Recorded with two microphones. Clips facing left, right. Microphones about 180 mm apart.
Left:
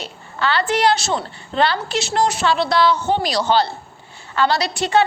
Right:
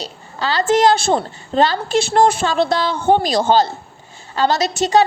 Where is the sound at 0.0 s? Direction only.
35° right (ahead or behind).